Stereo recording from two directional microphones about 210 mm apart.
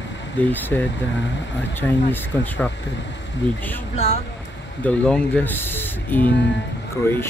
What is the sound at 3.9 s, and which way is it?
Speech, 30° left (ahead or behind).